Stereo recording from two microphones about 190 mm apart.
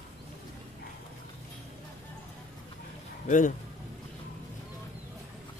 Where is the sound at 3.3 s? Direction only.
45° left (ahead or behind).